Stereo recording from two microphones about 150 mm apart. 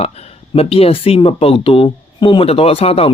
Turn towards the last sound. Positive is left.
turn(degrees=40)  # may be behind; listen again after turning